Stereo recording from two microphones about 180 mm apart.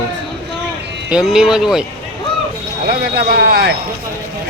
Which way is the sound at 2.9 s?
55° right (ahead or behind).